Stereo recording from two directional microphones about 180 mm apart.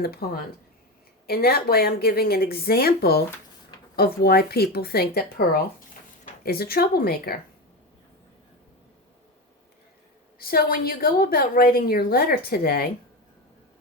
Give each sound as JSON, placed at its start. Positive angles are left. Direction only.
{"t": 0.0, "sound": "a woman's voice", "side_deg": 60}
{"t": 1.3, "sound": "a woman's voice", "side_deg": 60}
{"t": 10.3, "sound": "a woman's voice", "side_deg": 55}